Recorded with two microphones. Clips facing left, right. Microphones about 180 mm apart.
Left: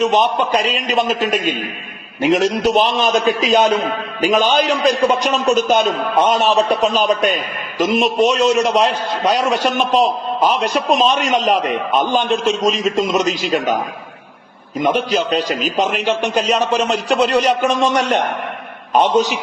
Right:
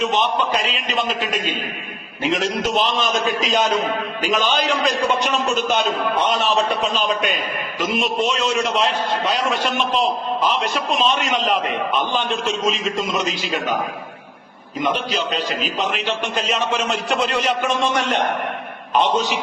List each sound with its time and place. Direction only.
0.0 s a man's voice: 40° left (ahead or behind)
14.8 s a man's voice: 45° left (ahead or behind)